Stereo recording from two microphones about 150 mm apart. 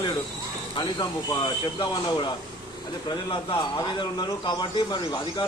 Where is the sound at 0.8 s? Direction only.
30° left (ahead or behind).